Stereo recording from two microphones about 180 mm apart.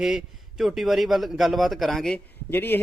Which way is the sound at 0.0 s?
5° right (ahead or behind).